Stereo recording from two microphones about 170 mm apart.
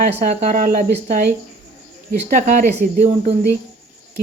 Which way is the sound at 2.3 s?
50° right (ahead or behind).